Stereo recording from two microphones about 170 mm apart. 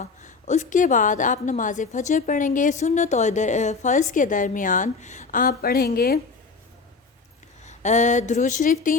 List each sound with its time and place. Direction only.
0.0 s a woman's voice: 45° left (ahead or behind)
7.6 s a woman's voice: 45° left (ahead or behind)